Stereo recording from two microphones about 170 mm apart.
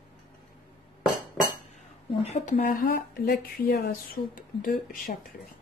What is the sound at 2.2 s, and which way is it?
Speech, 40° left (ahead or behind).